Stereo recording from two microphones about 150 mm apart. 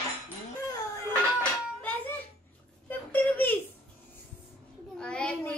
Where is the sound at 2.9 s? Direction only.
10° left (ahead or behind).